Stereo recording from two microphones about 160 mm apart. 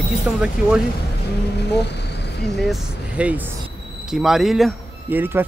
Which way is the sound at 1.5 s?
90° left.